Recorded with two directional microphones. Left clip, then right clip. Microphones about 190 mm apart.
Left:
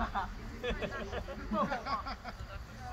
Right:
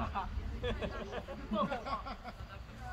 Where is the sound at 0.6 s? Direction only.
55° right (ahead or behind).